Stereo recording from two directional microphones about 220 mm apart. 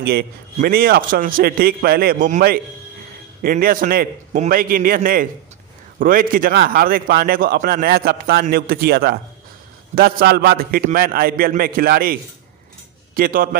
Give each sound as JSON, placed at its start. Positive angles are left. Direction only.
{"t": 0.0, "sound": "a man's voice", "side_deg": -45}